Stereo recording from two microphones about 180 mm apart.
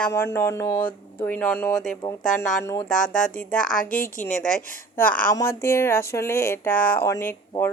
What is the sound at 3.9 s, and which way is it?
Speech, 50° left (ahead or behind).